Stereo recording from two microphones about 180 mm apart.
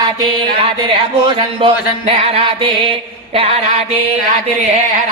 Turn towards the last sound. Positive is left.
turn(degrees=-35)  # may be behind; listen again after turning